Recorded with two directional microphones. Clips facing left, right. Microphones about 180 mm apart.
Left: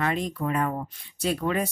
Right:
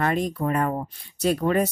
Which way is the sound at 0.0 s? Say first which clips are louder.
Right 3 dB; 45° right (ahead or behind).